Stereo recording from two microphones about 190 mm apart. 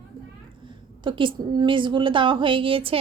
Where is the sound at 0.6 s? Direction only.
25° right (ahead or behind).